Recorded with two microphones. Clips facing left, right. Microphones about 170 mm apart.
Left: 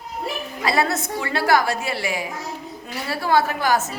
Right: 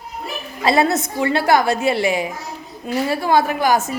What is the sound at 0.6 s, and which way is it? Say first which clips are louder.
A woman's voice: right 5 dB; 25° right (ahead or behind).